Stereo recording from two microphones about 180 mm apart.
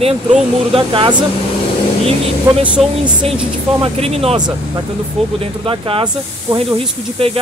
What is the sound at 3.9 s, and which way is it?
Speech, 35° right (ahead or behind).